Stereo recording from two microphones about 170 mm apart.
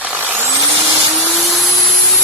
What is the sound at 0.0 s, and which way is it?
Vehicle, 10° right (ahead or behind).